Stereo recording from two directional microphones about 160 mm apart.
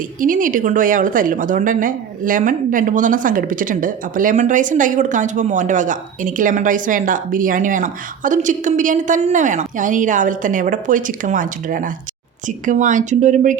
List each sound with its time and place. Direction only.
0.2 s a woman's voice: 55° right (ahead or behind)